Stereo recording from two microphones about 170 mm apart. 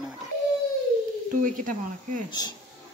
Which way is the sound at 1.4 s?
50° right (ahead or behind).